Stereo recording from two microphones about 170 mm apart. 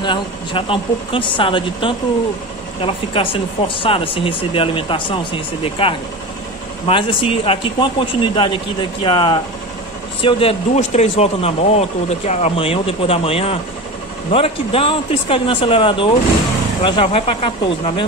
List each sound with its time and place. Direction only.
0.0 s speech: 30° left (ahead or behind)